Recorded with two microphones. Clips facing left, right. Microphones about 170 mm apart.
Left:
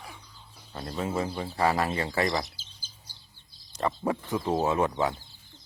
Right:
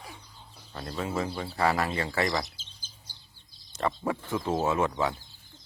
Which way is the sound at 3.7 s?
20° left (ahead or behind).